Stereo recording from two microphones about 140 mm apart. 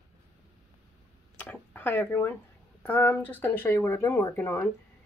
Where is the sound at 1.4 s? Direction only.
15° left (ahead or behind).